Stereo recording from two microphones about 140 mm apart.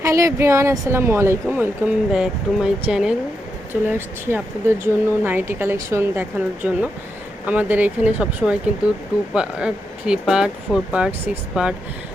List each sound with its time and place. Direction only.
0.0 s speech: 20° right (ahead or behind); by 11.7 s 5° right (ahead or behind)